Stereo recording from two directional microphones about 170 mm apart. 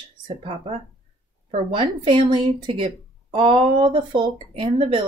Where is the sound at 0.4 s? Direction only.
30° right (ahead or behind).